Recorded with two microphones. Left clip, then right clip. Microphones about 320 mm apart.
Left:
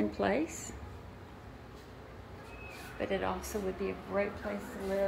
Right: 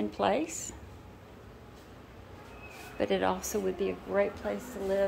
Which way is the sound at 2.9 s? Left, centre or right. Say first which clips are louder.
Right 5 dB; centre.